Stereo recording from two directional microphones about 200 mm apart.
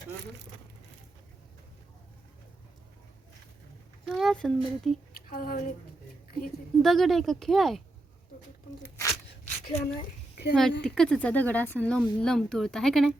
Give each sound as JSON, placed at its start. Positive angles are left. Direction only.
{"t": 4.1, "sound": "speech", "side_deg": 0}
{"t": 5.3, "sound": "speech", "side_deg": 45}
{"t": 6.8, "sound": "speech", "side_deg": 0}
{"t": 8.8, "sound": "a sound", "side_deg": 15}
{"t": 9.6, "sound": "speech", "side_deg": 40}
{"t": 10.5, "sound": "speech", "side_deg": 5}